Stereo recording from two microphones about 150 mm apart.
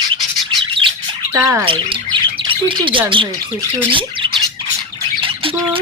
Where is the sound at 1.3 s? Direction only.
20° right (ahead or behind).